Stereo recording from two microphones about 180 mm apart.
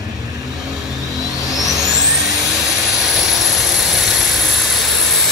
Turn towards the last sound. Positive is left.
turn(degrees=0)  # may be behind; listen again after turning